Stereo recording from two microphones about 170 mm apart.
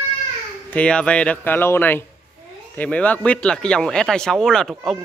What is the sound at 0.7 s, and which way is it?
Speech, 5° left (ahead or behind).